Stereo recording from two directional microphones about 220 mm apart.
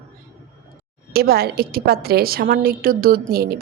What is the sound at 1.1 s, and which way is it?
Speech, 45° right (ahead or behind).